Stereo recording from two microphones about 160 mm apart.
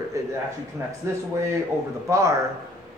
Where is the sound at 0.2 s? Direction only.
20° right (ahead or behind).